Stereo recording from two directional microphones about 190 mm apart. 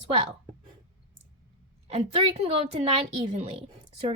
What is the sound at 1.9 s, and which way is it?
A woman's voice, 30° right (ahead or behind).